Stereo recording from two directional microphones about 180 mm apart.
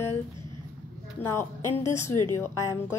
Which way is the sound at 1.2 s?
15° left (ahead or behind).